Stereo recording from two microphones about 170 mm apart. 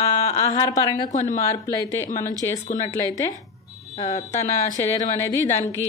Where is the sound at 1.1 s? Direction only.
45° left (ahead or behind).